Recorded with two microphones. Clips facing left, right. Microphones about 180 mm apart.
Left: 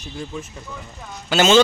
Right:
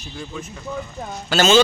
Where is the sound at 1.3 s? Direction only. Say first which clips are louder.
Left 1 dB; 20° left (ahead or behind).